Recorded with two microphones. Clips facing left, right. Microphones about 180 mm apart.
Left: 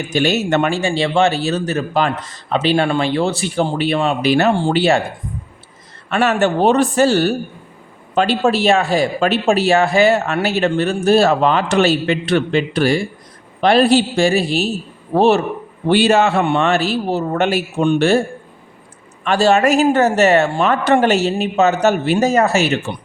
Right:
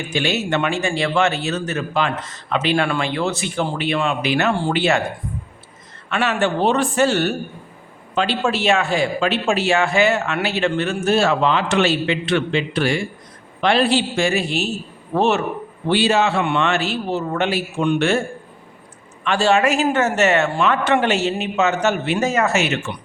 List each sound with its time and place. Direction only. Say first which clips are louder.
0.1 s speech: left 5 dB; 40° left (ahead or behind)
0.8 s speech: left 3 dB; 30° left (ahead or behind)
6.1 s speech: left 4 dB; 40° left (ahead or behind)
15.9 s speech: left 4 dB; 50° left (ahead or behind)
19.2 s speech: left 3 dB; 40° left (ahead or behind)